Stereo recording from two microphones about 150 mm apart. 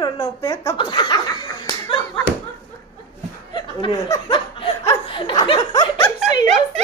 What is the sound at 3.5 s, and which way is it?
Speech, 30° left (ahead or behind).